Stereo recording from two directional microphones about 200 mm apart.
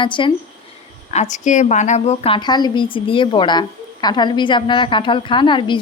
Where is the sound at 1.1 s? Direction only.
35° left (ahead or behind).